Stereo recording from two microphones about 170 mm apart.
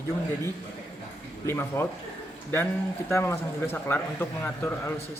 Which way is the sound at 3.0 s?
15° left (ahead or behind).